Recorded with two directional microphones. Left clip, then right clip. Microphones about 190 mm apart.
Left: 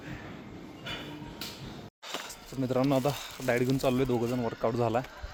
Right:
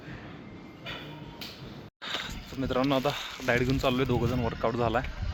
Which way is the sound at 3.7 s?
5° left (ahead or behind).